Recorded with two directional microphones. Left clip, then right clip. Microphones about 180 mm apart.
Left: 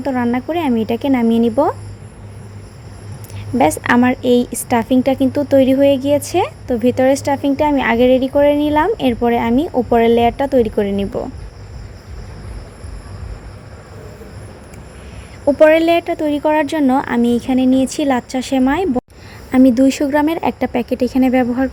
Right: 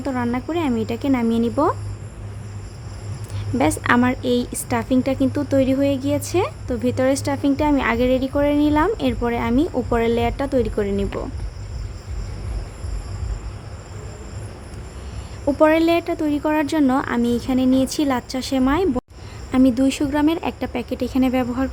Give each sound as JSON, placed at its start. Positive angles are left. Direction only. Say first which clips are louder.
{"t": 0.0, "sound": "a woman's voice", "louder": "left 6 dB", "side_deg": 10}
{"t": 3.6, "sound": "a woman's voice", "louder": "left 5 dB", "side_deg": 10}
{"t": 15.4, "sound": "a woman's voice", "louder": "left 6 dB", "side_deg": 10}